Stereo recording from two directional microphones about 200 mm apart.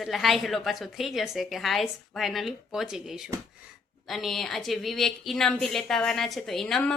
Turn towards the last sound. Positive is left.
turn(degrees=5)  # may be behind; listen again after turning